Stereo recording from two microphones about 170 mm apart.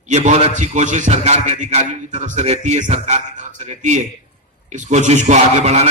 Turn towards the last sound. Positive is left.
turn(degrees=-40)  # may be behind; listen again after turning